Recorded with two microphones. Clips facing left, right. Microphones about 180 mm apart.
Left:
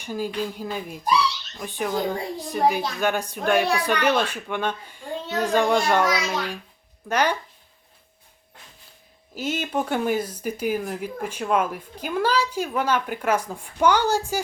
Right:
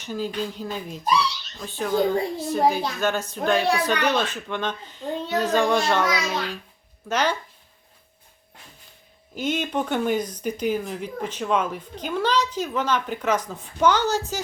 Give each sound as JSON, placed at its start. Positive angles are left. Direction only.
{"t": 0.0, "sound": "speech", "side_deg": 10}
{"t": 9.3, "sound": "speech", "side_deg": 5}